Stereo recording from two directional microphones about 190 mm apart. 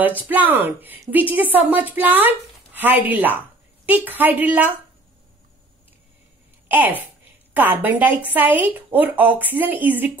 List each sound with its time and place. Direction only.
0.3 s a woman's voice: 10° right (ahead or behind)
6.7 s a woman's voice: 10° right (ahead or behind)